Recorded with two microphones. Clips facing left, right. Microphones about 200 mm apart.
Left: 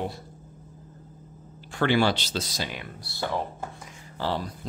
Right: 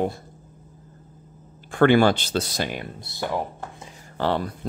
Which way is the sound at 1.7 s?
55° right (ahead or behind).